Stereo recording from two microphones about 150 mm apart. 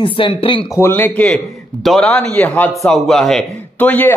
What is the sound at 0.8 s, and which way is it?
A man's voice, 15° left (ahead or behind).